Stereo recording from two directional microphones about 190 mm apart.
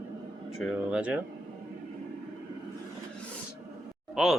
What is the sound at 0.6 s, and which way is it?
Speech, 5° right (ahead or behind).